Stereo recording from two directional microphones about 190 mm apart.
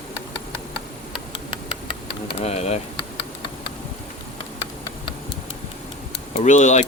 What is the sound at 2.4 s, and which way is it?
Speech, 35° left (ahead or behind).